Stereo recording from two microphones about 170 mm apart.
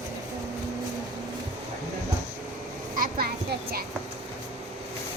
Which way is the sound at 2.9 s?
60° right (ahead or behind).